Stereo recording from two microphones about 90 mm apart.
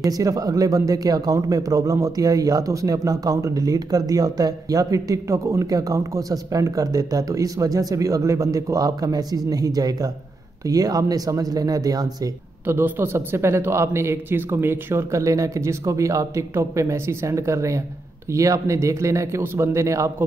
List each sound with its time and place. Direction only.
0.0 s speech: 40° right (ahead or behind)
12.6 s speech: 25° right (ahead or behind)